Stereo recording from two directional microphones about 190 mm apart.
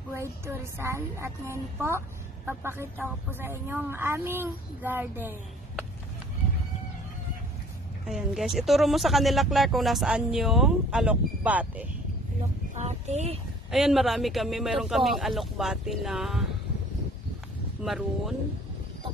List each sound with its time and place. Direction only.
0.1 s speech: 15° right (ahead or behind)
8.1 s speech: centre (ahead or behind)
12.7 s speech: 35° right (ahead or behind)
13.7 s speech: centre (ahead or behind)
17.8 s speech: centre (ahead or behind)